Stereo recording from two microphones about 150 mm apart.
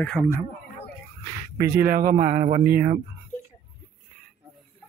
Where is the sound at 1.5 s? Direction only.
90° right; by 2.1 s 70° right (ahead or behind).